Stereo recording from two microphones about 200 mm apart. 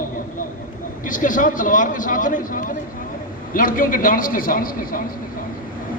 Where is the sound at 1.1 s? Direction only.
40° left (ahead or behind).